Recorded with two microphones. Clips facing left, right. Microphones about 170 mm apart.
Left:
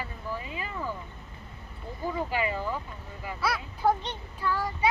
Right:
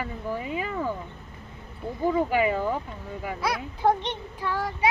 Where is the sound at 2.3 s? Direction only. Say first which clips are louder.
Right 6 dB; 55° right (ahead or behind).